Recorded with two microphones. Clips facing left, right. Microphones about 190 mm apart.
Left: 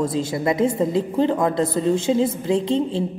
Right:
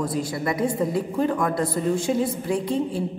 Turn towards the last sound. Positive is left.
turn(degrees=25)  # may be behind; listen again after turning